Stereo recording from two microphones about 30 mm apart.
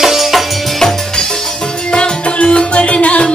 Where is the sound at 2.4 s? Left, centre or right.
Left.